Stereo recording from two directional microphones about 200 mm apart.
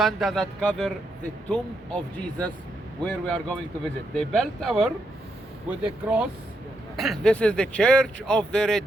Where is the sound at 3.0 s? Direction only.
5° left (ahead or behind).